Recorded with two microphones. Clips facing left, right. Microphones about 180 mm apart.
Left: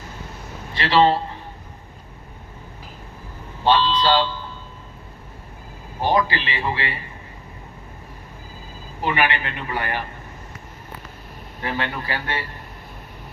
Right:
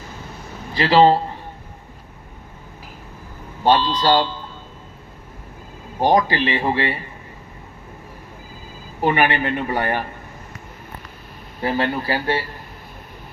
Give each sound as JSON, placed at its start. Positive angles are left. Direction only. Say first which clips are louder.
{"t": 0.7, "sound": "speech", "louder": "right 4 dB", "side_deg": -35}
{"t": 3.6, "sound": "a man's voice", "louder": "right 1 dB", "side_deg": -45}
{"t": 6.0, "sound": "a man's voice", "louder": "right 4 dB", "side_deg": -45}
{"t": 9.0, "sound": "a man's voice", "louder": "right 4 dB", "side_deg": -45}
{"t": 11.6, "sound": "speech", "louder": "right 6 dB", "side_deg": -35}